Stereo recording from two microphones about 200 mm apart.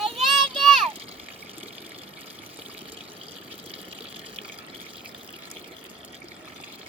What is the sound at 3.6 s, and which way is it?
Water, 30° right (ahead or behind).